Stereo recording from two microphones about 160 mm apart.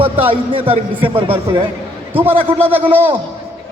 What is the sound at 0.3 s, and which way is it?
A man's voice, 35° right (ahead or behind).